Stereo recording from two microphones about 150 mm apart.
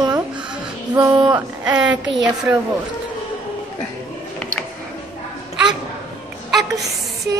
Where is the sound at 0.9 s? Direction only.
25° right (ahead or behind).